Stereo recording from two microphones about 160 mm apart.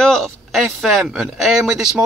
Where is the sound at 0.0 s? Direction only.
Centre (ahead or behind).